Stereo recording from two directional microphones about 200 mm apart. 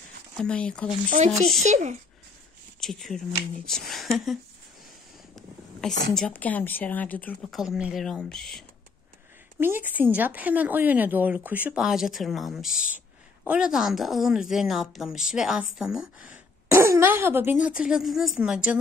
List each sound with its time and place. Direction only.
0.4 s a woman's voice: 5° left (ahead or behind)
1.6 s a child's voice: 35° right (ahead or behind)
2.8 s speech: centre (ahead or behind)
3.6 s a sound: centre (ahead or behind)
6.1 s a woman's voice: 5° left (ahead or behind)
9.6 s a woman's voice: 10° right (ahead or behind)